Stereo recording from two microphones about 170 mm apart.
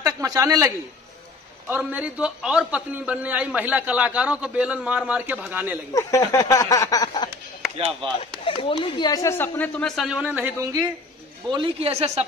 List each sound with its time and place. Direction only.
0.0 s a man's voice: 20° right (ahead or behind)
5.9 s speech: 20° left (ahead or behind)
8.5 s speech: 30° left (ahead or behind); by 10.9 s 20° right (ahead or behind)
11.5 s a man's voice: 30° right (ahead or behind)